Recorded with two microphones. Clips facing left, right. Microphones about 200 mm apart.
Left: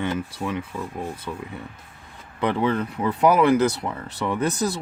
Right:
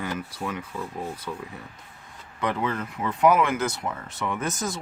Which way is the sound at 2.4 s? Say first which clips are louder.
Left 5 dB; 30° left (ahead or behind).